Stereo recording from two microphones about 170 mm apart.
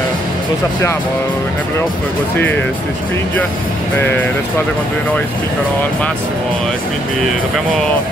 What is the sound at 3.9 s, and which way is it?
Speech, 10° left (ahead or behind).